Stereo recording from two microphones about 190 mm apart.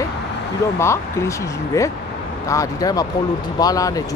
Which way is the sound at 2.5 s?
20° left (ahead or behind).